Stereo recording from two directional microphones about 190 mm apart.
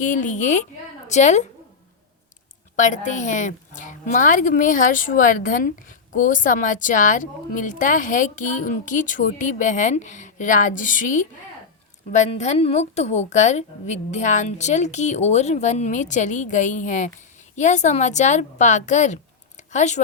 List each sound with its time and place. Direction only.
0.0 s a woman's voice: 40° left (ahead or behind)
2.7 s a woman's voice: 40° left (ahead or behind)